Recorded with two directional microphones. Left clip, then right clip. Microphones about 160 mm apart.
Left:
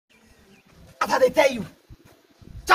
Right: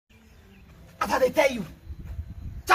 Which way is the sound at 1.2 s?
5° left (ahead or behind).